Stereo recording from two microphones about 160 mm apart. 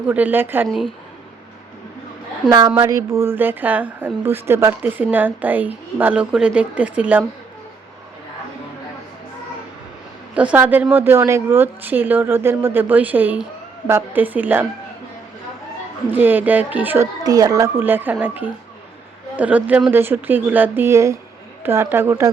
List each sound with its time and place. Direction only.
0.1 s a woman's voice: 10° right (ahead or behind)
2.5 s a woman's voice: 25° right (ahead or behind); by 7.3 s 10° right (ahead or behind)
10.3 s a woman's voice: 10° right (ahead or behind)
16.0 s a woman's voice: 10° right (ahead or behind)
17.2 s a woman's voice: 25° right (ahead or behind)